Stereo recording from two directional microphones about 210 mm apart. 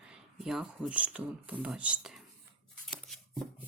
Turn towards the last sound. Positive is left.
turn(degrees=0)  # may be behind; listen again after turning